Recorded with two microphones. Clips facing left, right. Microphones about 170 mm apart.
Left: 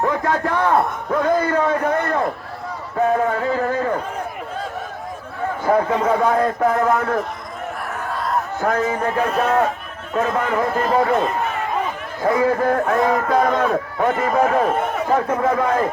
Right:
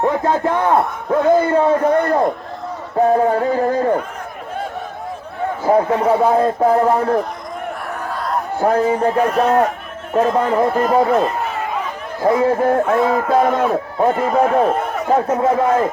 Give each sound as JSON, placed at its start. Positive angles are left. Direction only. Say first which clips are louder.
{"t": 0.0, "sound": "a man's voice", "louder": "right 3 dB", "side_deg": -25}
{"t": 5.6, "sound": "a man's voice", "louder": "right 3 dB", "side_deg": -30}
{"t": 7.9, "sound": "a sound", "louder": "even", "side_deg": 0}
{"t": 8.5, "sound": "a man's voice", "louder": "right 7 dB", "side_deg": -30}
{"t": 12.2, "sound": "a man's voice", "louder": "right 3 dB", "side_deg": -25}
{"t": 13.1, "sound": "a man's voice", "louder": "right 2 dB", "side_deg": -5}
{"t": 13.7, "sound": "a man's voice", "louder": "right 3 dB", "side_deg": -30}